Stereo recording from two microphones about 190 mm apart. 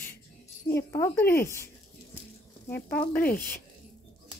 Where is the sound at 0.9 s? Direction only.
15° left (ahead or behind).